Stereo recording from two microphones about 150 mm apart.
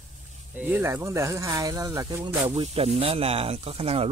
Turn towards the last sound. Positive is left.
turn(degrees=-40)  # may be behind; listen again after turning